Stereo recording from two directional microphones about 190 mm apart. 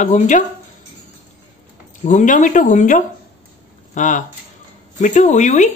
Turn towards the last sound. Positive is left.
turn(degrees=40)  # may be behind; listen again after turning